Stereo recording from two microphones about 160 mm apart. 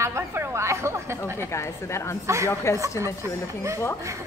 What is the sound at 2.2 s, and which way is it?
Speech, 15° right (ahead or behind).